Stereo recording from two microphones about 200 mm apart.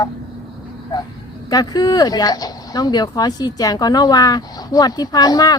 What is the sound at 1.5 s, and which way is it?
Speech, 20° left (ahead or behind).